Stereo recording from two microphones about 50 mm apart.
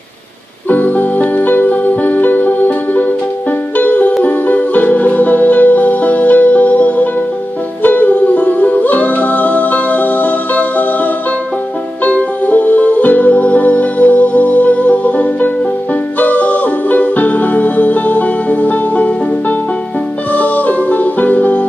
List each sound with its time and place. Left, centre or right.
0.7 s music: left
20.3 s music: left